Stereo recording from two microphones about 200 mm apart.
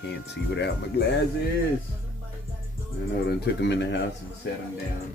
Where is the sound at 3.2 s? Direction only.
55° left (ahead or behind).